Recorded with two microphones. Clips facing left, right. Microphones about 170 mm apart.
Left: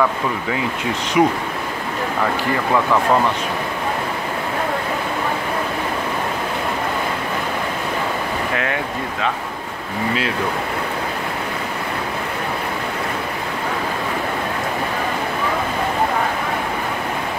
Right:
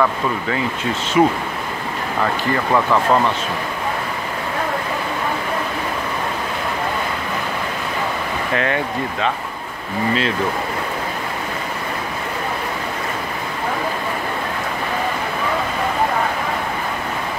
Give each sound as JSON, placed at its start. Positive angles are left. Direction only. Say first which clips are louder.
{"t": 1.2, "sound": "speech", "louder": "right 1 dB", "side_deg": 15}